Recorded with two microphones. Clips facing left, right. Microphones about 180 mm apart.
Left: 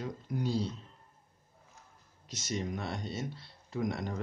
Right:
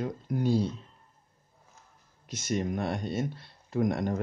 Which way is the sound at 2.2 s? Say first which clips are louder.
Right 6 dB; 55° right (ahead or behind).